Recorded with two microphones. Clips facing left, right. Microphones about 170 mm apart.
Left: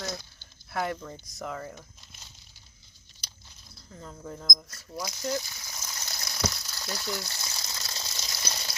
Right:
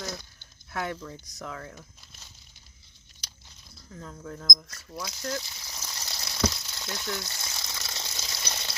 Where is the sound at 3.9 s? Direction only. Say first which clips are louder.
Right 1 dB; 5° left (ahead or behind).